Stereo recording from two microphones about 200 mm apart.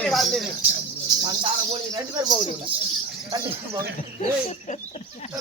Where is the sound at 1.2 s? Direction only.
20° right (ahead or behind).